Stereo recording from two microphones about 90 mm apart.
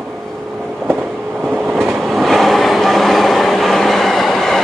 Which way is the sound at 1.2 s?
20° right (ahead or behind).